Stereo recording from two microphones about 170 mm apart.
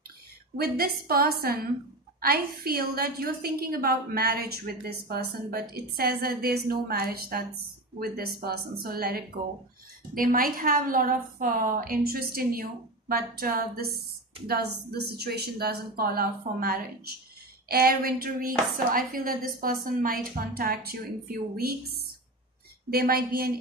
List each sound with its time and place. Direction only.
0.6 s a woman's voice: 65° right (ahead or behind)